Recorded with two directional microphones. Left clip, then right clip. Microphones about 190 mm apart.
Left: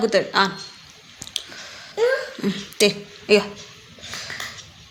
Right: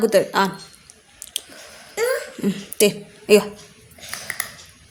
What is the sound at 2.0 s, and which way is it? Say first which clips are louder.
Speech: left 2 dB; 40° right (ahead or behind).